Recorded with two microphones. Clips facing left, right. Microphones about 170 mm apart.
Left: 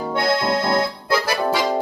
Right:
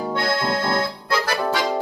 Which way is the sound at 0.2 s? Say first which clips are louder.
Left 5 dB; 15° left (ahead or behind).